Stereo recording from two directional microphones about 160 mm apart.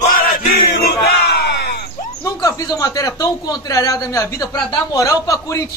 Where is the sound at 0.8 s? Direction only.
85° left.